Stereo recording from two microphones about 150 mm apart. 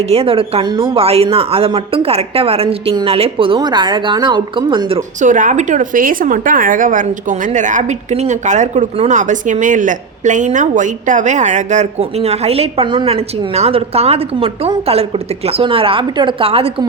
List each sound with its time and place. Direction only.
0.0 s speech: 40° right (ahead or behind)
5.2 s a woman's voice: 60° right (ahead or behind); by 16.8 s 40° right (ahead or behind)